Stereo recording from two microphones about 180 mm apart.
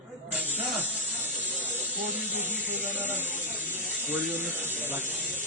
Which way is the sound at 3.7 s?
10° right (ahead or behind).